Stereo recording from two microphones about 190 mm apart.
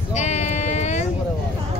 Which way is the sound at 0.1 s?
35° left (ahead or behind).